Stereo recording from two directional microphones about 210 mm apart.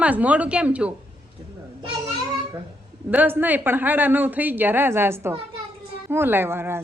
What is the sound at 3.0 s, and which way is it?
Speech, 10° right (ahead or behind).